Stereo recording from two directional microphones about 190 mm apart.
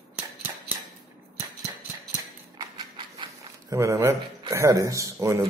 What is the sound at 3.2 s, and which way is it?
Speech, 20° right (ahead or behind).